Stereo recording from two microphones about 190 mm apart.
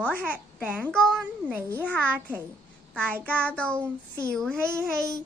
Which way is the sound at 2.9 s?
5° left (ahead or behind).